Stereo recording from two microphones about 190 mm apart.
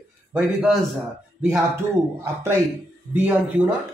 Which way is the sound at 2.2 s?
15° right (ahead or behind).